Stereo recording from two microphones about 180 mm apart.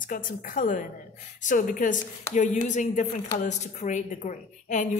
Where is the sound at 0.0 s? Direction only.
50° left (ahead or behind).